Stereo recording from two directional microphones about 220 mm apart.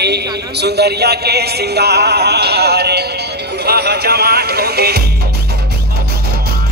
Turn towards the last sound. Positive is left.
turn(degrees=-45)  # may be behind; listen again after turning